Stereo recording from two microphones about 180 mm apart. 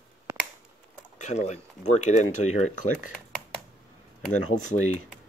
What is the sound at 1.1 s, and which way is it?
Speech, 40° left (ahead or behind).